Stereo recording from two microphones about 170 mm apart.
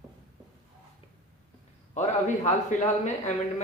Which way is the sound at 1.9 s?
45° left (ahead or behind).